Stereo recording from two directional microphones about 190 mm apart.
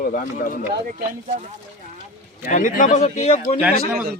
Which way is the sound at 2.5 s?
45° left (ahead or behind).